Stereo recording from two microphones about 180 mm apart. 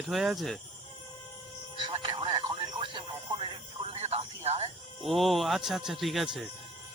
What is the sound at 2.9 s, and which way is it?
Music, 30° right (ahead or behind).